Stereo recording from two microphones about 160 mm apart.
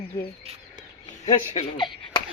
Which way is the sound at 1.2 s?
35° left (ahead or behind).